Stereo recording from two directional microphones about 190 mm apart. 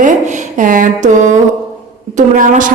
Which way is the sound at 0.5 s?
45° right (ahead or behind).